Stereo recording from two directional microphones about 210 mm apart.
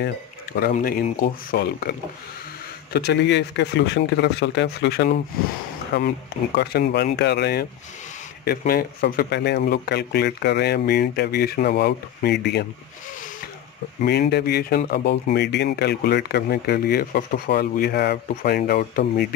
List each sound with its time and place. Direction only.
0.0 s speech: 45° left (ahead or behind)
14.3 s speech: 50° left (ahead or behind)